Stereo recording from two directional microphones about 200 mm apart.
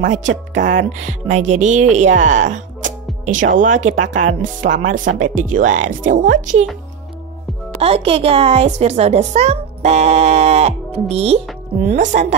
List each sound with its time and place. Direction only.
0.0 s speech: 35° right (ahead or behind)
7.8 s speech: 30° right (ahead or behind)